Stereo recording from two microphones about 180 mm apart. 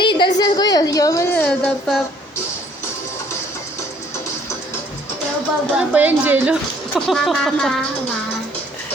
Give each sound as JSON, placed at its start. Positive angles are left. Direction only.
{"t": 0.0, "sound": "a sound", "side_deg": 25}
{"t": 0.3, "sound": "a woman's voice", "side_deg": 20}
{"t": 5.7, "sound": "a woman's voice", "side_deg": -10}